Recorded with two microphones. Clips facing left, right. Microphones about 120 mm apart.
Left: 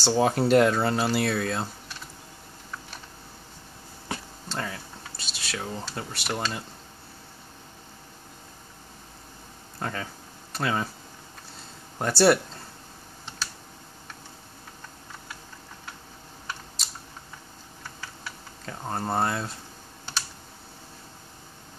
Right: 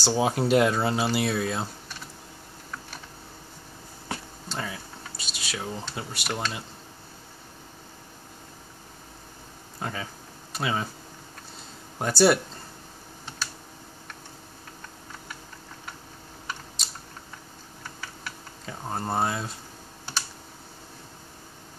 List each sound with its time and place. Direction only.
0.0 s speech: 5° right (ahead or behind)
4.5 s speech: 5° right (ahead or behind)
9.8 s speech: 5° right (ahead or behind)
12.0 s speech: centre (ahead or behind)
16.8 s typing: centre (ahead or behind)
18.7 s speech: centre (ahead or behind)